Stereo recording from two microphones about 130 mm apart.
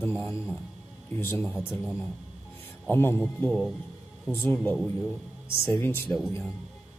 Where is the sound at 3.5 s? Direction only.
Centre (ahead or behind).